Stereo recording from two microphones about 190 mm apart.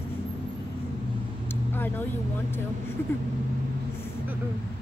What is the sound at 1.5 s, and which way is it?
Vehicle, 10° left (ahead or behind).